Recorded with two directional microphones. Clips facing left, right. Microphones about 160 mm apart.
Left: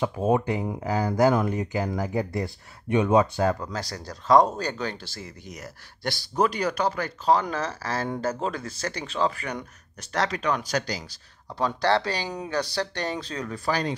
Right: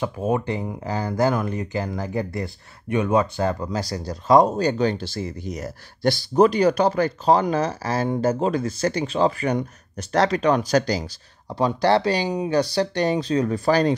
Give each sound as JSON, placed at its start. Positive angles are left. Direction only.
{"t": 0.0, "sound": "speech", "side_deg": 20}
{"t": 3.5, "sound": "speech", "side_deg": -10}
{"t": 11.4, "sound": "speech", "side_deg": -15}
{"t": 13.5, "sound": "speech", "side_deg": -35}